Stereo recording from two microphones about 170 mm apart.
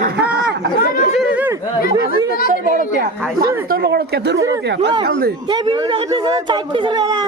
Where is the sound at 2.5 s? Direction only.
55° right (ahead or behind); by 5.3 s 70° right (ahead or behind).